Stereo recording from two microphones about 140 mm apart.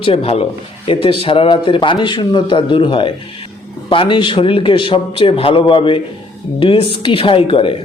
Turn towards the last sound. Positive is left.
turn(degrees=40)  # may be behind; listen again after turning